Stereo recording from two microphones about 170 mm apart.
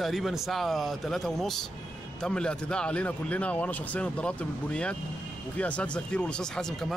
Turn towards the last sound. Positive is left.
turn(degrees=5)  # may be behind; listen again after turning